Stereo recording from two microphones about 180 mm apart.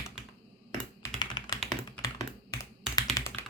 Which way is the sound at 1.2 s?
25° left (ahead or behind).